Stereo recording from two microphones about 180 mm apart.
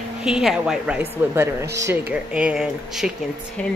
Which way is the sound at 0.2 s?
5° right (ahead or behind).